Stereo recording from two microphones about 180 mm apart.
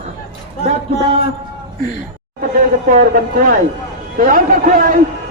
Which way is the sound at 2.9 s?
50° right (ahead or behind).